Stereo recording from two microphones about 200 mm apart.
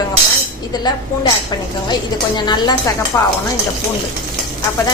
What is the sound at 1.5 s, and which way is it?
A woman's voice, 20° left (ahead or behind).